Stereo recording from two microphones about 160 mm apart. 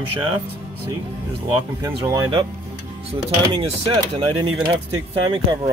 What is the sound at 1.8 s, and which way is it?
Speech, 25° right (ahead or behind).